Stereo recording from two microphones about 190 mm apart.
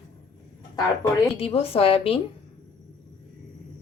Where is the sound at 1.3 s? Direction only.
30° left (ahead or behind).